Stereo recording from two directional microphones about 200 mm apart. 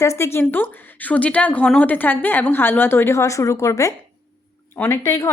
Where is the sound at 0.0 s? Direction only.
15° left (ahead or behind).